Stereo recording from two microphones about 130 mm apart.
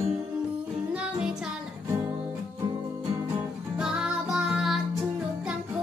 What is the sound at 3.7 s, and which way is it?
Music, 5° right (ahead or behind).